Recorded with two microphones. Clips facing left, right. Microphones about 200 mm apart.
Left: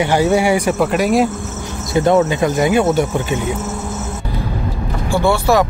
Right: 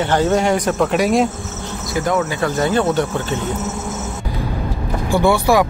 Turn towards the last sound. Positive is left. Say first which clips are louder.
# even
turn(degrees=-15)  # may be behind; listen again after turning